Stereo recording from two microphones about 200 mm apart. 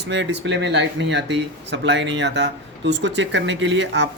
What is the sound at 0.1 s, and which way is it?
Speech, 60° right (ahead or behind).